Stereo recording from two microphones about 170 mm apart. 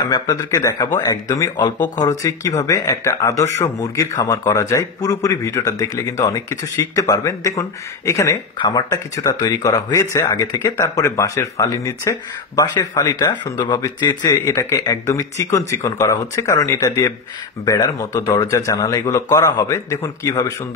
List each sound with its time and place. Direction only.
0.1 s speech: 20° left (ahead or behind)